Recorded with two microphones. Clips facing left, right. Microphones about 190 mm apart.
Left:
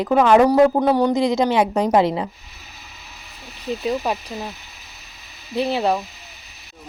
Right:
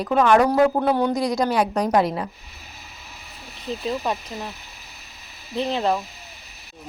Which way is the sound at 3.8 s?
10° left (ahead or behind).